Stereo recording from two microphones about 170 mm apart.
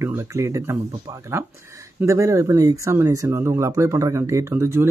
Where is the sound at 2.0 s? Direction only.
20° right (ahead or behind).